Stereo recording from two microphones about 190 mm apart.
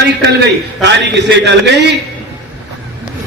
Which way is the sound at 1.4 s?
65° right (ahead or behind).